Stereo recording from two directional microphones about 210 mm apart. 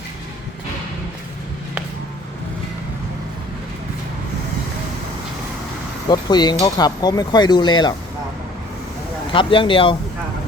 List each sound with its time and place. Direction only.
6.1 s speech: 20° left (ahead or behind)
9.3 s speech: 25° left (ahead or behind)